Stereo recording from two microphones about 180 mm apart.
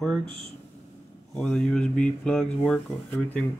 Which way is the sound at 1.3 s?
5° left (ahead or behind).